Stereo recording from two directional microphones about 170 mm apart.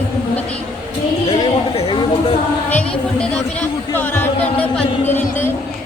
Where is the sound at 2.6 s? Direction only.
10° left (ahead or behind).